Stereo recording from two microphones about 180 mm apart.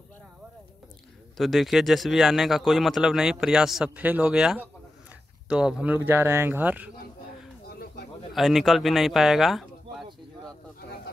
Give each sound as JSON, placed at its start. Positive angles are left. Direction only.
{"t": 1.3, "sound": "speech", "side_deg": 0}
{"t": 7.6, "sound": "bird", "side_deg": 65}
{"t": 8.3, "sound": "speech", "side_deg": 0}